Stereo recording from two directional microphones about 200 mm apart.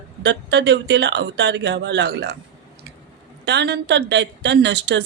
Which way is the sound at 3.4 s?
55° right (ahead or behind).